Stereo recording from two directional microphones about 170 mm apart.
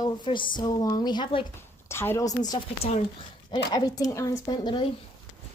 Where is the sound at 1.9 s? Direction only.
15° left (ahead or behind).